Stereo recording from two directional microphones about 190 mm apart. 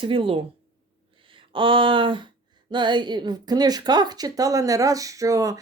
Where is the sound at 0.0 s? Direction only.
30° right (ahead or behind).